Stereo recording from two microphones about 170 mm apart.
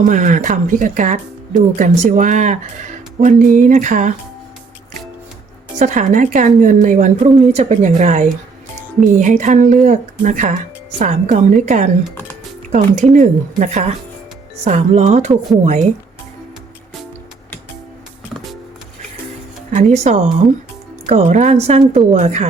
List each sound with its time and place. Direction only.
0.0 s speech: 50° right (ahead or behind)
5.8 s speech: 45° right (ahead or behind)
19.7 s a woman's voice: 45° right (ahead or behind)